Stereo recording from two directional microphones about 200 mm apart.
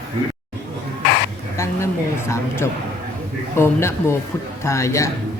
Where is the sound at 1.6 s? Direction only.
15° left (ahead or behind).